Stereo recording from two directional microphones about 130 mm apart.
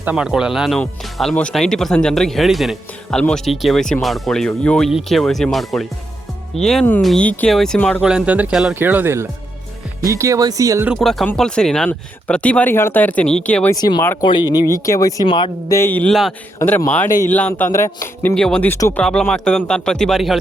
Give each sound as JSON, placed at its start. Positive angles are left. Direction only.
{"t": 0.0, "sound": "speech", "side_deg": -10}
{"t": 0.8, "sound": "speech", "side_deg": 5}
{"t": 8.0, "sound": "speech", "side_deg": -5}
{"t": 10.9, "sound": "speech", "side_deg": 0}
{"t": 13.7, "sound": "speech", "side_deg": 30}
{"t": 14.5, "sound": "speech", "side_deg": 25}
{"t": 15.3, "sound": "speech", "side_deg": 40}
{"t": 15.7, "sound": "speech", "side_deg": 15}
{"t": 18.7, "sound": "speech", "side_deg": 20}
{"t": 19.0, "sound": "speech", "side_deg": 5}